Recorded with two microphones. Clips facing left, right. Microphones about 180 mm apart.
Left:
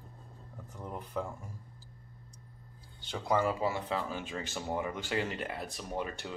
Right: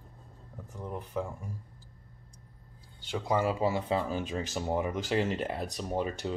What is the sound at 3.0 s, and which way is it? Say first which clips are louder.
Speech: right 1 dB; 15° right (ahead or behind).